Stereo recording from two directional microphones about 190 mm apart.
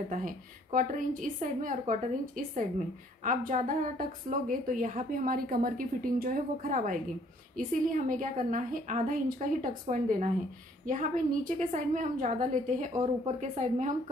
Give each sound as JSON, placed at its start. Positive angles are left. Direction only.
{"t": 0.1, "sound": "a woman's voice", "side_deg": -45}